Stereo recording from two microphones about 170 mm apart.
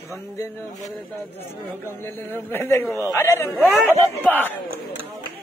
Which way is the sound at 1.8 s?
15° left (ahead or behind).